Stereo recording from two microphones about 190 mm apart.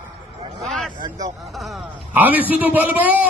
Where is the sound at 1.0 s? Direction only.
25° right (ahead or behind).